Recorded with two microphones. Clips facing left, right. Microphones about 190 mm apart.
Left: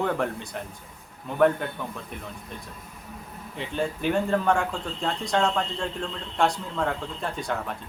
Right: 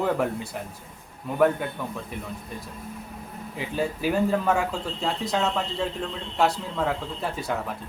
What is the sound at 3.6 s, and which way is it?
Speech, 5° right (ahead or behind).